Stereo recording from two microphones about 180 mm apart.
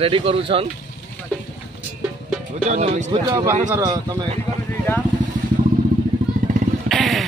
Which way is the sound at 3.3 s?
15° right (ahead or behind).